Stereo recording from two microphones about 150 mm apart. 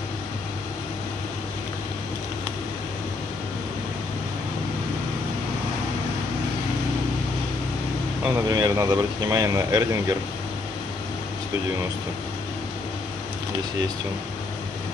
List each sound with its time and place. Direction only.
8.5 s speech: 25° right (ahead or behind)